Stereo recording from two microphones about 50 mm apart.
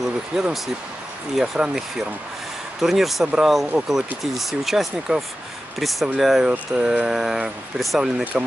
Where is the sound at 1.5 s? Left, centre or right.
Centre.